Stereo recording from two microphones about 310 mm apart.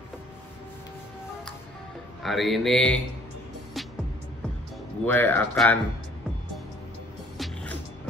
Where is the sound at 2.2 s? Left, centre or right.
Centre.